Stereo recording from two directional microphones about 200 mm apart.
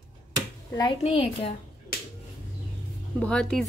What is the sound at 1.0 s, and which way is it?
Speech, 30° left (ahead or behind).